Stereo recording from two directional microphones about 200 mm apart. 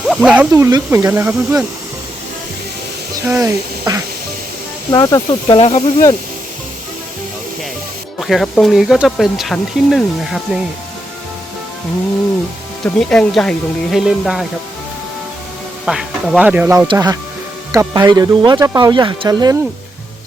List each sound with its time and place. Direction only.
0.1 s speech: 5° right (ahead or behind)
3.2 s speech: 15° right (ahead or behind)
4.9 s speech: 15° left (ahead or behind)
5.5 s speech: 35° left (ahead or behind)
8.2 s speech: centre (ahead or behind)
12.8 s speech: 5° left (ahead or behind)
15.9 s speech: centre (ahead or behind)
16.9 s speech: 20° right (ahead or behind)